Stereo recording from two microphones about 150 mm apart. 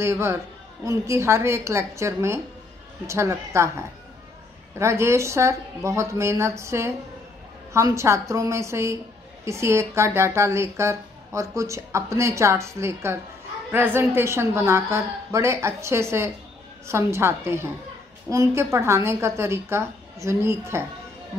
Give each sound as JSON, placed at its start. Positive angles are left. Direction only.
{"t": 0.0, "sound": "a woman's voice", "side_deg": -20}
{"t": 4.7, "sound": "a woman's voice", "side_deg": -20}